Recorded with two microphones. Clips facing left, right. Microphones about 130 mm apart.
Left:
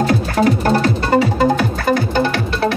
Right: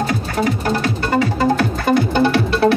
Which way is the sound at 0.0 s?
50° left (ahead or behind).